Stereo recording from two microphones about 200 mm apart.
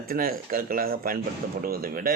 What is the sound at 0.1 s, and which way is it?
Speech, 45° right (ahead or behind).